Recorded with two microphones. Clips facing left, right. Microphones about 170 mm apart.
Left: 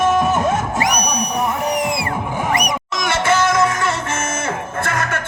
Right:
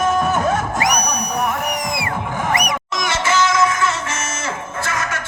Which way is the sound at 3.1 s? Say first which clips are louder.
Left 2 dB; 55° left (ahead or behind).